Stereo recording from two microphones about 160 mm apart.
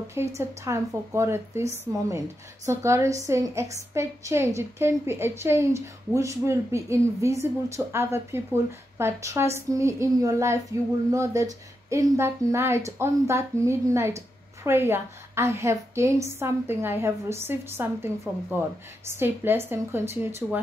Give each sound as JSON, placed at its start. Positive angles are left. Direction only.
{"t": 0.4, "sound": "a woman's voice", "side_deg": -20}